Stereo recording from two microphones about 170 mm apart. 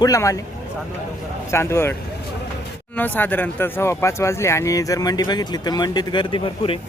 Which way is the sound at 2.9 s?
10° left (ahead or behind).